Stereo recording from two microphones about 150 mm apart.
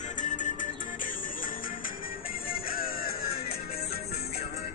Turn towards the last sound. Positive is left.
turn(degrees=75)  # may be behind; listen again after turning